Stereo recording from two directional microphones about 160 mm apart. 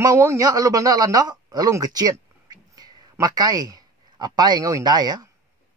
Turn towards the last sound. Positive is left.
turn(degrees=-25)  # may be behind; listen again after turning